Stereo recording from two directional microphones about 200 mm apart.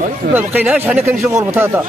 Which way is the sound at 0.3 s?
10° right (ahead or behind).